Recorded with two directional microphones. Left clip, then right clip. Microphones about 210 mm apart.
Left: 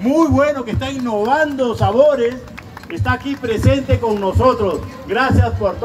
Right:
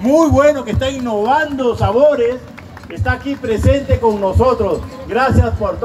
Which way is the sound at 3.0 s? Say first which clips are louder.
Right 1 dB; 30° left (ahead or behind).